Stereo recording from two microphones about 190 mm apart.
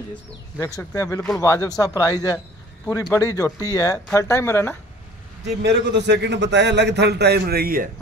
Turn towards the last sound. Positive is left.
turn(degrees=-50)  # may be behind; listen again after turning